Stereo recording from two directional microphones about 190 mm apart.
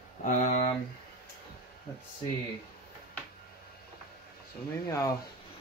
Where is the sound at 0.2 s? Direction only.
40° left (ahead or behind).